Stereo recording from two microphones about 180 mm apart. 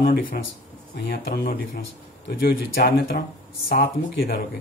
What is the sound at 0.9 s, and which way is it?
Speech, 55° left (ahead or behind).